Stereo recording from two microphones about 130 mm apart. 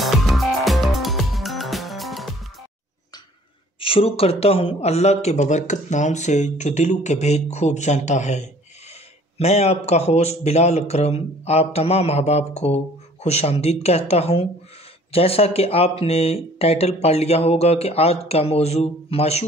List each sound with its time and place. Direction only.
0.0 s music: centre (ahead or behind)
3.8 s speech: 45° left (ahead or behind)